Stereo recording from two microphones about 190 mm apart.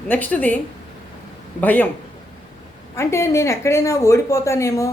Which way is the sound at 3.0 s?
15° left (ahead or behind).